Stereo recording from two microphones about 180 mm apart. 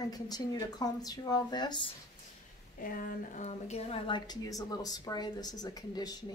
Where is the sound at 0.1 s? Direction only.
20° left (ahead or behind).